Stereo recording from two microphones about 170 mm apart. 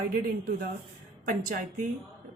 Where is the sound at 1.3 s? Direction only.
55° right (ahead or behind).